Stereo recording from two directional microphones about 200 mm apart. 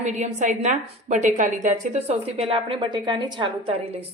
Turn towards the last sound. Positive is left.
turn(degrees=-25)  # may be behind; listen again after turning